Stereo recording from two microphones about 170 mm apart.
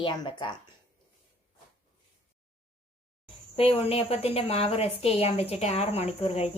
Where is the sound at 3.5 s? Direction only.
35° left (ahead or behind).